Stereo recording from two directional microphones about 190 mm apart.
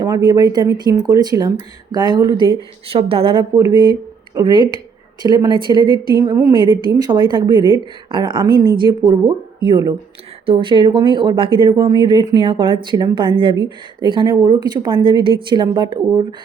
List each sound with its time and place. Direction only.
0.3 s speech: 20° right (ahead or behind)